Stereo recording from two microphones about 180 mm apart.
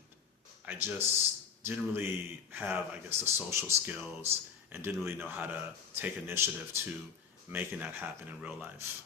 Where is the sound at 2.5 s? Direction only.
10° right (ahead or behind).